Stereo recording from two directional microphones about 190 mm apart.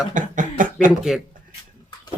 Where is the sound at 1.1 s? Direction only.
Centre (ahead or behind).